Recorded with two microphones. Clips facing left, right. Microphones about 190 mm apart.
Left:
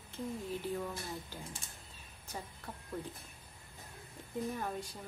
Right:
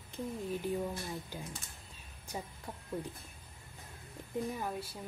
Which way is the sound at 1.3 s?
15° right (ahead or behind).